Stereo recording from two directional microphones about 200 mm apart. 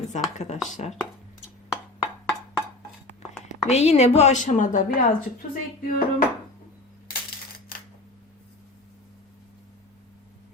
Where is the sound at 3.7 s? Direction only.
35° left (ahead or behind).